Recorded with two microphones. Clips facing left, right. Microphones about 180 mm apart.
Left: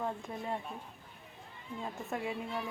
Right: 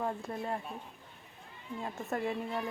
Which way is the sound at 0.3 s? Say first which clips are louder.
Right 2 dB; centre (ahead or behind).